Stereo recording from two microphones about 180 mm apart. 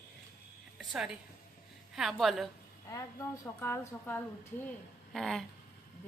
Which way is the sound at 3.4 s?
10° left (ahead or behind).